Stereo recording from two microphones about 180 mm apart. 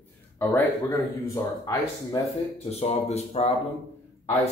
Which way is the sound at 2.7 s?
35° left (ahead or behind).